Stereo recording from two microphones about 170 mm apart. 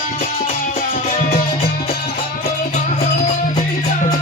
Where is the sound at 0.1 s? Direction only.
55° left (ahead or behind).